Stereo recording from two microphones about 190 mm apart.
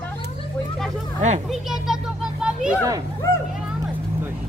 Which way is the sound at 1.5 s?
Centre (ahead or behind).